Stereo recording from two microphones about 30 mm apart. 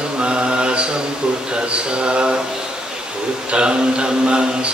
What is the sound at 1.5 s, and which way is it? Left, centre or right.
Speech, right.